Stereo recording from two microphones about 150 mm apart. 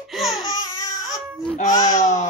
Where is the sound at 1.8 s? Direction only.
60° left (ahead or behind).